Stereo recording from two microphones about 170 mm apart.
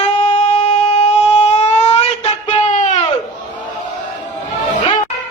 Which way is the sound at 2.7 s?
45° left (ahead or behind).